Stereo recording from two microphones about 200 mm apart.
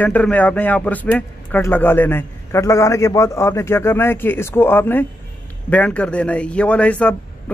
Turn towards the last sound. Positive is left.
turn(degrees=5)  # may be behind; listen again after turning